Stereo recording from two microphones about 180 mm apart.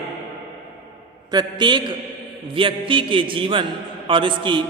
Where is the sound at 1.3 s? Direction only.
25° right (ahead or behind).